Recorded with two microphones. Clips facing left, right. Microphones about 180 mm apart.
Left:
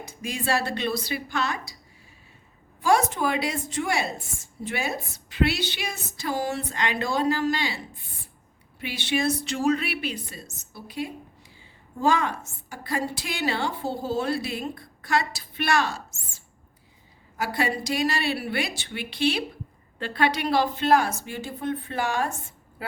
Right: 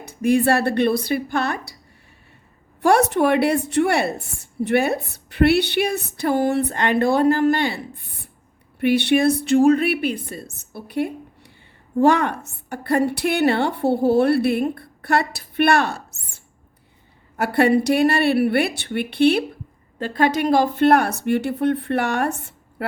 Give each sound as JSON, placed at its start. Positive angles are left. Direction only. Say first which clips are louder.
{"t": 0.0, "sound": "a woman's voice", "louder": "right 13 dB", "side_deg": -60}
{"t": 2.8, "sound": "a woman's voice", "louder": "right 6 dB", "side_deg": -65}
{"t": 20.0, "sound": "a woman's voice", "louder": "right 6 dB", "side_deg": -45}